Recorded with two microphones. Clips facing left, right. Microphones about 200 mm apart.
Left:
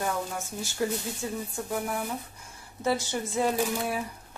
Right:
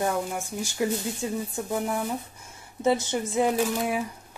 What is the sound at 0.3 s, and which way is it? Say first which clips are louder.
A woman's voice: right 4 dB; 15° right (ahead or behind).